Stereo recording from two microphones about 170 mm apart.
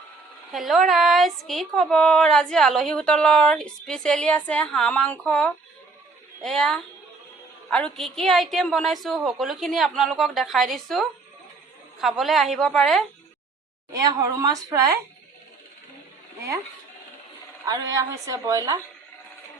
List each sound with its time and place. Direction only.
0.5 s speech: centre (ahead or behind)
13.9 s a woman's voice: 20° right (ahead or behind)
17.7 s a woman's voice: 20° right (ahead or behind)